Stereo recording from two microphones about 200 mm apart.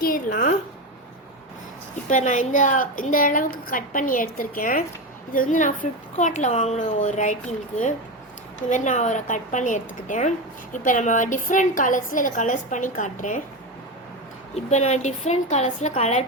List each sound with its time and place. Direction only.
0.0 s a woman's voice: 45° left (ahead or behind)
2.0 s a woman's voice: 40° left (ahead or behind)
8.7 s a woman's voice: 35° left (ahead or behind)
14.5 s a woman's voice: 35° left (ahead or behind)